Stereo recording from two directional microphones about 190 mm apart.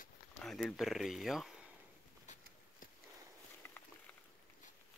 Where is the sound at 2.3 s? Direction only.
40° left (ahead or behind).